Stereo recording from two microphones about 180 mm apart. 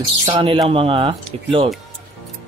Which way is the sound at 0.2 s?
30° right (ahead or behind).